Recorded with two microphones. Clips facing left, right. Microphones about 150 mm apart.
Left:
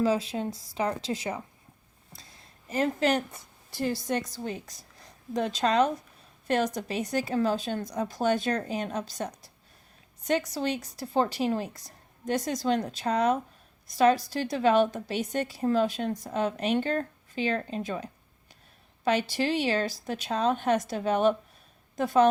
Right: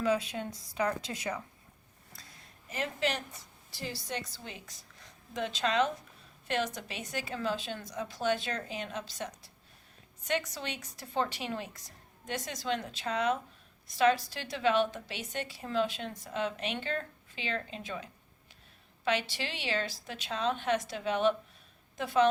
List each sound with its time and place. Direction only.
0.0 s speech: 30° left (ahead or behind)
2.6 s a woman's voice: 40° left (ahead or behind)